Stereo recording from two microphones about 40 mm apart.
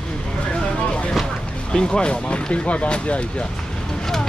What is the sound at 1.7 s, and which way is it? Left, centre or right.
Speech, left.